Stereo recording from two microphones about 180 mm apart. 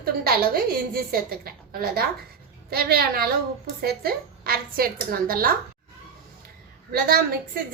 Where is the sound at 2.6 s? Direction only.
55° right (ahead or behind).